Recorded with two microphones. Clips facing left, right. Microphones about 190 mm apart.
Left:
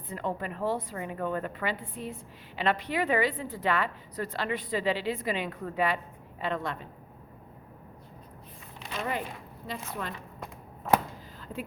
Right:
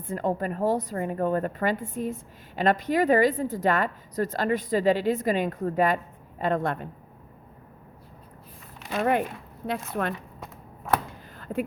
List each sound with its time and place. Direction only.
0.1 s a woman's voice: 45° right (ahead or behind)
8.9 s speech: 55° right (ahead or behind)
11.3 s a sound: 55° right (ahead or behind)